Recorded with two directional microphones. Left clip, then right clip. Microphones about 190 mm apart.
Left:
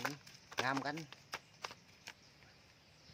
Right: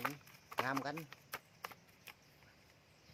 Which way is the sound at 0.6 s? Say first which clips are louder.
Left 1 dB; 5° left (ahead or behind).